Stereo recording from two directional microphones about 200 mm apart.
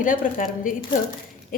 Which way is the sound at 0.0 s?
40° left (ahead or behind).